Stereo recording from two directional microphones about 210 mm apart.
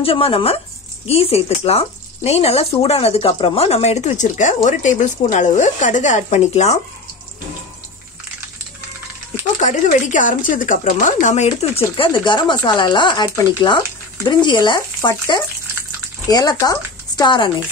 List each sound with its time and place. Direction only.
0.0 s speech: 25° left (ahead or behind)
9.6 s speech: 35° left (ahead or behind)